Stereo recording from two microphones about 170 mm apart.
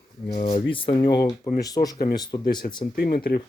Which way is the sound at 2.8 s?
55° left (ahead or behind).